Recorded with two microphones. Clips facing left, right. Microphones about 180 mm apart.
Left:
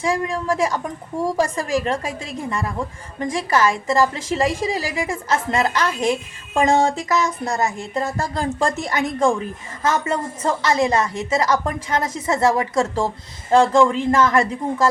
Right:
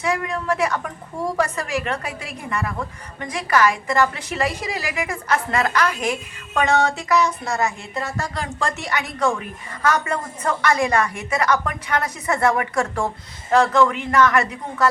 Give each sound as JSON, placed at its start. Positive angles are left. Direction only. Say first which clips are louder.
{"t": 0.0, "sound": "a woman's voice", "louder": "left 2 dB", "side_deg": 30}
{"t": 1.4, "sound": "a woman's voice", "louder": "left 2 dB", "side_deg": 30}